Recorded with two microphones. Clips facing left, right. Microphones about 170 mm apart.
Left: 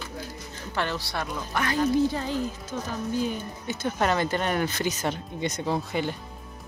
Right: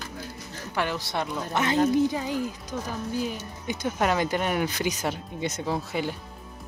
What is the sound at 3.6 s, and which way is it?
Speech, 15° right (ahead or behind).